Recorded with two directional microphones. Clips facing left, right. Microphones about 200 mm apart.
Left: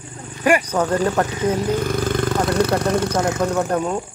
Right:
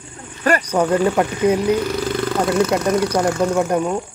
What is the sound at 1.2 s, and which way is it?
Speech, 15° right (ahead or behind).